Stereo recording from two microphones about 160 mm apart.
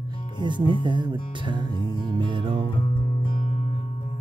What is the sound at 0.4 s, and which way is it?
Music, 30° right (ahead or behind).